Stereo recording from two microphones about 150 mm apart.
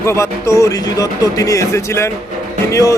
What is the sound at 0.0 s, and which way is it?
A man's voice, 20° left (ahead or behind).